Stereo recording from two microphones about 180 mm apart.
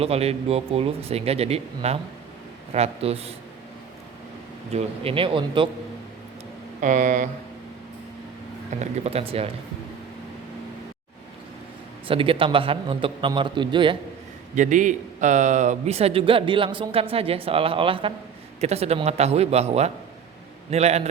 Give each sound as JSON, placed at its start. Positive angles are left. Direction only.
{"t": 0.0, "sound": "a man's voice", "side_deg": -35}
{"t": 4.7, "sound": "a man's voice", "side_deg": -30}
{"t": 6.8, "sound": "speech", "side_deg": -45}
{"t": 8.8, "sound": "a man's voice", "side_deg": -35}
{"t": 12.0, "sound": "a man's voice", "side_deg": -30}
{"t": 14.5, "sound": "a man's voice", "side_deg": -45}